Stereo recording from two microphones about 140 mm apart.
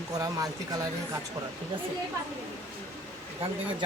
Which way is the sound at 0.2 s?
25° right (ahead or behind).